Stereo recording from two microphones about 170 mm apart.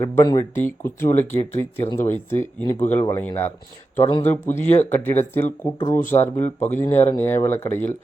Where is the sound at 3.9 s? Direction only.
25° left (ahead or behind).